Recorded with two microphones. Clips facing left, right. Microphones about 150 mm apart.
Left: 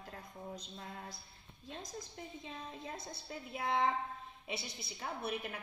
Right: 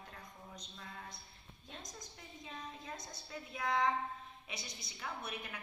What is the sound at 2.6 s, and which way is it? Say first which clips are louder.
A woman's voice: even; 30° left (ahead or behind).